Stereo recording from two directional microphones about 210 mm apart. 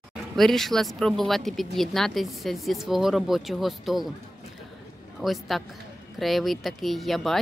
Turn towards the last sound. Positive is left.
turn(degrees=0)  # may be behind; listen again after turning